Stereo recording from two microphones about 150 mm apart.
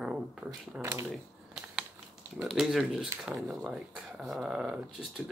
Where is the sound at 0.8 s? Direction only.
20° right (ahead or behind).